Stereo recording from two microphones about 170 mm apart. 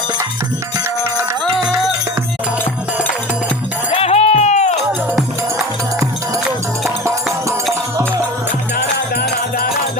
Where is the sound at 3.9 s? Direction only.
40° left (ahead or behind).